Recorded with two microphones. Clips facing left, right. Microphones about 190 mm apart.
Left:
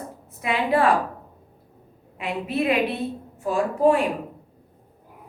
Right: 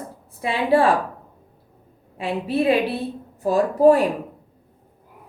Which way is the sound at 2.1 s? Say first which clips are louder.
Right 3 dB; 30° right (ahead or behind).